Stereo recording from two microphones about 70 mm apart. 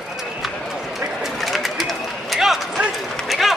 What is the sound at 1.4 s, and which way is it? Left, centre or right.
Pigeon, centre.